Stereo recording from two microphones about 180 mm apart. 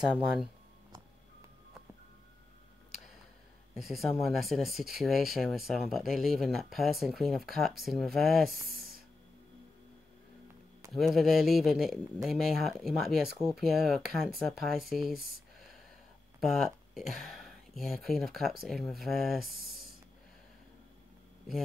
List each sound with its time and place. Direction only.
0.0 s speech: 5° right (ahead or behind)
3.7 s speech: centre (ahead or behind)
8.7 s a sound: 55° right (ahead or behind)
10.9 s speech: centre (ahead or behind)
15.1 s speech: 55° right (ahead or behind)
16.9 s speech: centre (ahead or behind)
19.4 s a sound: 55° right (ahead or behind)